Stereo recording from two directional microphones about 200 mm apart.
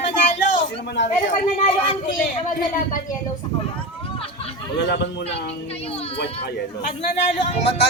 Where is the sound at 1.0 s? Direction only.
65° left (ahead or behind).